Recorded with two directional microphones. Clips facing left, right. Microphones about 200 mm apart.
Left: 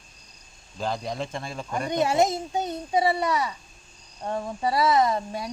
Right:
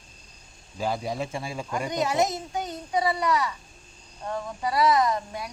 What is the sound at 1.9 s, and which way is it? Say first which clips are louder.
A child's voice: left 3 dB; 25° left (ahead or behind).